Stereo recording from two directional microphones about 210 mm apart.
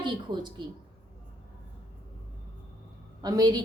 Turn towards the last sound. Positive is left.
turn(degrees=-20)  # may be behind; listen again after turning